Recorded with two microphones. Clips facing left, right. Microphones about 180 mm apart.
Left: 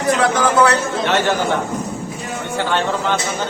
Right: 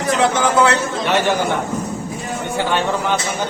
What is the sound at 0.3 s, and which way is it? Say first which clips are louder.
Speech: left 1 dB; 25° right (ahead or behind).